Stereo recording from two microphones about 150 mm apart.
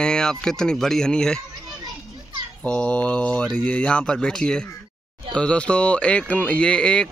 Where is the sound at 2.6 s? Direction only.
10° left (ahead or behind).